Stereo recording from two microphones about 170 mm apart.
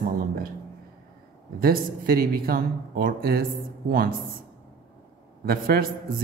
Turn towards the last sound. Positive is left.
turn(degrees=-60)  # may be behind; listen again after turning